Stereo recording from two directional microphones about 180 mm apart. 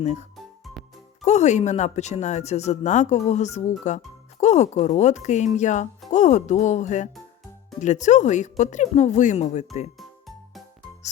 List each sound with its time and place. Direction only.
0.0 s a woman's voice: 40° left (ahead or behind)
0.6 s music: centre (ahead or behind)
1.2 s a woman's voice: 40° left (ahead or behind)
10.0 s music: centre (ahead or behind)